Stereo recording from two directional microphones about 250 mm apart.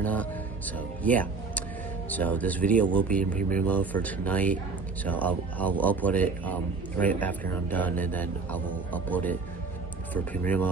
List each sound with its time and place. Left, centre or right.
0.0 s speech: centre
3.3 s speech: right
3.6 s speech: centre
10.4 s speech: centre